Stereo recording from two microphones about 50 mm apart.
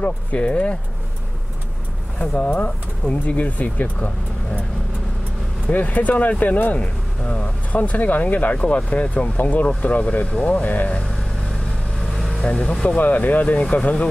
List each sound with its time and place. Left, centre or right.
0.0 s speech: left
2.1 s speech: left
5.7 s speech: left
12.1 s vehicle: centre
12.4 s speech: left